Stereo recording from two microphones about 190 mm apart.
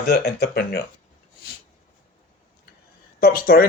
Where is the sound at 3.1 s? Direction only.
50° left (ahead or behind).